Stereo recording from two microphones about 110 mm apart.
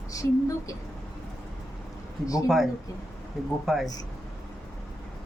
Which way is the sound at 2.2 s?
30° left (ahead or behind).